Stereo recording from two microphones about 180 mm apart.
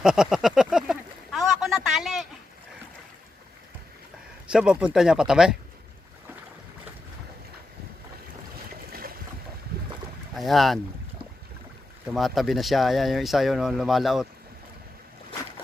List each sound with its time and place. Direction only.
0.0 s a sound: 5° right (ahead or behind)
4.5 s speech: 5° right (ahead or behind)
8.9 s boat: 55° right (ahead or behind)
10.3 s boat: centre (ahead or behind)
12.1 s speech: centre (ahead or behind)